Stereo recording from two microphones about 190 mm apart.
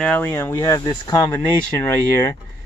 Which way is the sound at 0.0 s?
10° left (ahead or behind).